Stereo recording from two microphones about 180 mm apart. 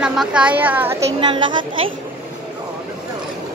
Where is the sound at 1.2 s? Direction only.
25° right (ahead or behind).